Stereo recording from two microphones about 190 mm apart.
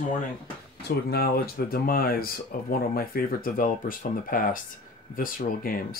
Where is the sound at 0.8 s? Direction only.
55° left (ahead or behind).